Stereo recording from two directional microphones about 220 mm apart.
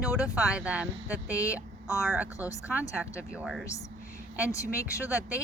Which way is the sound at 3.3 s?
5° right (ahead or behind).